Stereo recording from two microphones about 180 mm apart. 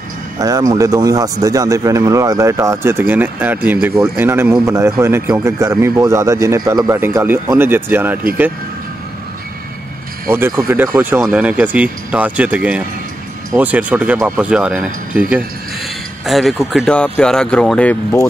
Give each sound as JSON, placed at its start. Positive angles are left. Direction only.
{"t": 0.4, "sound": "a man's voice", "side_deg": -20}
{"t": 10.3, "sound": "a man's voice", "side_deg": -15}
{"t": 11.1, "sound": "a man's voice", "side_deg": -5}
{"t": 16.3, "sound": "speech", "side_deg": 0}